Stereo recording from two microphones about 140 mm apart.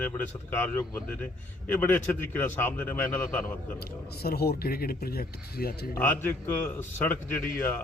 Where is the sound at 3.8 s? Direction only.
90° left.